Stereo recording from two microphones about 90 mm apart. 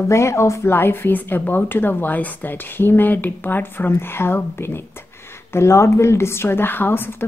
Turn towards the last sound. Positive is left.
turn(degrees=25)  # may be behind; listen again after turning